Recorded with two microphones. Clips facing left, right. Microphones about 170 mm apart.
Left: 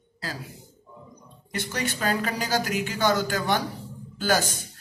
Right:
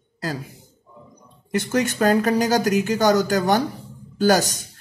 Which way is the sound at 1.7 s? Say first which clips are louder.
Right 9 dB; 45° right (ahead or behind).